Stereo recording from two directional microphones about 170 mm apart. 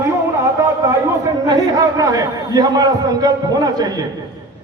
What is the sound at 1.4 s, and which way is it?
A man's voice, 20° right (ahead or behind).